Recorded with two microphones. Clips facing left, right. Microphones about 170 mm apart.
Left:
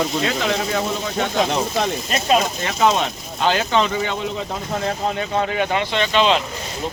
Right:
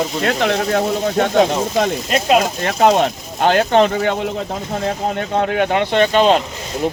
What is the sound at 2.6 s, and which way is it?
Speech, 60° right (ahead or behind).